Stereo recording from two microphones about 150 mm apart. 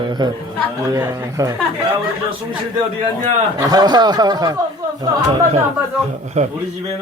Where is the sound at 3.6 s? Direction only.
25° right (ahead or behind).